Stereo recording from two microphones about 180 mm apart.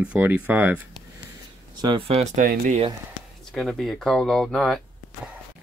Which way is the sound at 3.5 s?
Centre (ahead or behind).